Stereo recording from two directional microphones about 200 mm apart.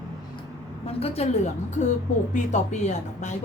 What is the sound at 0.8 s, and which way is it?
Speech, 30° left (ahead or behind).